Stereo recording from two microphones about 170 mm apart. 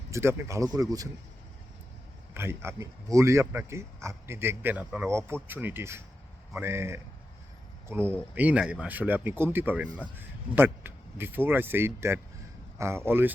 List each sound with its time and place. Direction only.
0.1 s speech: 15° right (ahead or behind)
2.3 s speech: 15° right (ahead or behind)